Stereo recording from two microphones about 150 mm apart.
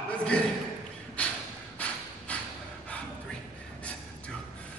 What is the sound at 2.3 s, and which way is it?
Snort, 10° left (ahead or behind).